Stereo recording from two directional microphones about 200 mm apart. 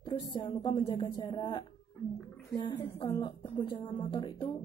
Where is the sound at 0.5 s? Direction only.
25° left (ahead or behind).